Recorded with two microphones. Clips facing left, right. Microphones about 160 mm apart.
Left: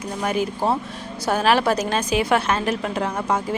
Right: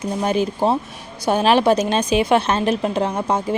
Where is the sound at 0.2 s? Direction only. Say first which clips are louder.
Right 3 dB; 25° right (ahead or behind).